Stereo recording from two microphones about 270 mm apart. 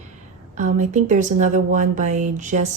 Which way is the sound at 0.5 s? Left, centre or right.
Right.